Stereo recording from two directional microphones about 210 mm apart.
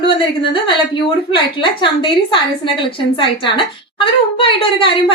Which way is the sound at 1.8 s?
25° left (ahead or behind).